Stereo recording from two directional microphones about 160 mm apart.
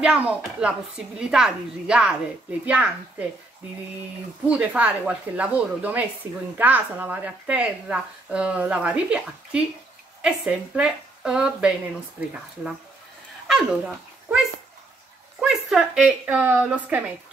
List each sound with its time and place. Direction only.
0.0 s a woman's voice: 5° right (ahead or behind)
4.5 s a woman's voice: 10° right (ahead or behind)
13.5 s a sound: 5° right (ahead or behind)
15.4 s a woman's voice: 5° right (ahead or behind)